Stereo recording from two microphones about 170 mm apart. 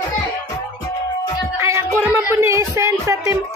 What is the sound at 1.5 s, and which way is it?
Music, 15° right (ahead or behind).